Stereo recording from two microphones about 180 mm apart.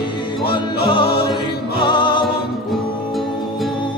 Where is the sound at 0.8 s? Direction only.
25° left (ahead or behind).